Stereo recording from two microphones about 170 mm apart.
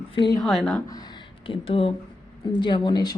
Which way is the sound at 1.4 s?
30° left (ahead or behind).